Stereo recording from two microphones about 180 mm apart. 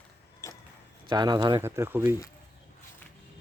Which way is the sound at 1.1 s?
25° right (ahead or behind).